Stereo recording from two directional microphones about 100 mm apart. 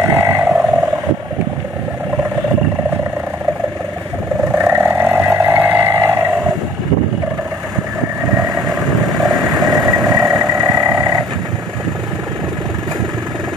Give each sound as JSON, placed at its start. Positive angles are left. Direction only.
{"t": 0.1, "sound": "frog", "side_deg": -20}
{"t": 4.5, "sound": "vehicle", "side_deg": -20}
{"t": 9.3, "sound": "vehicle", "side_deg": -40}